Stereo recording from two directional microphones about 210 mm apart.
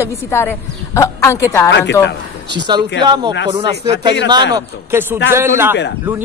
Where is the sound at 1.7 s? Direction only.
60° left (ahead or behind).